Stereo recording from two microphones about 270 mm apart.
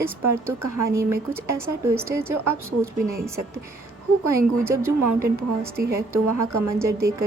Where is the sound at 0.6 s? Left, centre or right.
Right.